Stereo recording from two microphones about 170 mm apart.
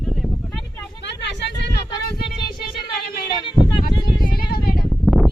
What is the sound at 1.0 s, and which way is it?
Vehicle, 90° left.